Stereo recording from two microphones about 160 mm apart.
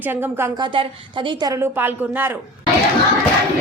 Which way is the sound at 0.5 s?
30° right (ahead or behind).